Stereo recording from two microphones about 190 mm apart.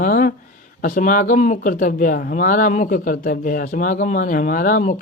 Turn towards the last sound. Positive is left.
turn(degrees=45)  # may be behind; listen again after turning